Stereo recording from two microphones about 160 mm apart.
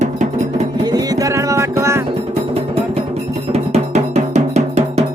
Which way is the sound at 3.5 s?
45° right (ahead or behind).